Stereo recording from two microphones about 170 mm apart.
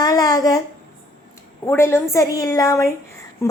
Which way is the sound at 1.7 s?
15° left (ahead or behind).